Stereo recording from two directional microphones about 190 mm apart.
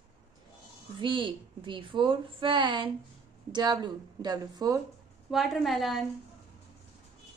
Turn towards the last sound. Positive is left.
turn(degrees=0)  # may be behind; listen again after turning